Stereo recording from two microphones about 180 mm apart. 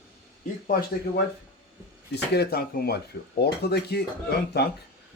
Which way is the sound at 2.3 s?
60° left (ahead or behind).